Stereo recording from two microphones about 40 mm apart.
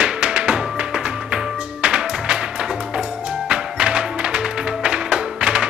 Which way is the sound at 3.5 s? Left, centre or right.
Right.